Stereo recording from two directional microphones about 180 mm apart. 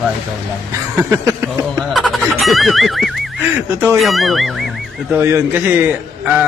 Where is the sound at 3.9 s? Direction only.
Centre (ahead or behind).